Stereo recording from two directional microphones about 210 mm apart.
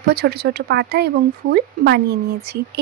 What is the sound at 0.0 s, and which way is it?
Speech, 50° right (ahead or behind).